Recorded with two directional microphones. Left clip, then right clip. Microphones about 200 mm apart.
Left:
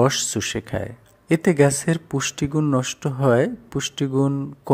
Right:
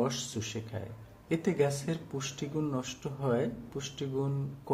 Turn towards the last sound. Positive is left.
turn(degrees=50)  # may be behind; listen again after turning